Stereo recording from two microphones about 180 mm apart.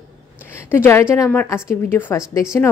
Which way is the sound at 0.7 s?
15° left (ahead or behind).